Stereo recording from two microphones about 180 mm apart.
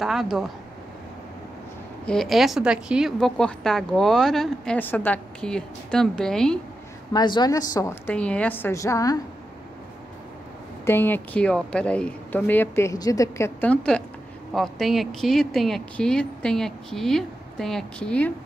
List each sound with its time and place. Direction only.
0.0 s a woman's voice: centre (ahead or behind)
2.0 s a woman's voice: centre (ahead or behind)
7.1 s a woman's voice: 25° left (ahead or behind)
8.1 s a woman's voice: 5° left (ahead or behind)
10.9 s a woman's voice: 10° left (ahead or behind)